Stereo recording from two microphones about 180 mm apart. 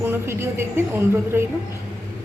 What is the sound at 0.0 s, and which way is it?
A woman's voice, 15° right (ahead or behind).